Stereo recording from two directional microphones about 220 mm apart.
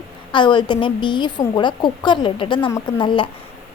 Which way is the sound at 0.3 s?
20° left (ahead or behind).